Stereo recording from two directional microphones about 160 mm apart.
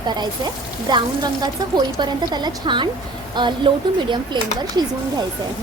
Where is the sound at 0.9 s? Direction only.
25° right (ahead or behind).